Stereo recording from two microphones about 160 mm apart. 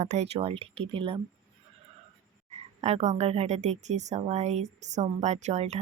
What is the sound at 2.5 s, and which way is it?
Speech, 40° right (ahead or behind).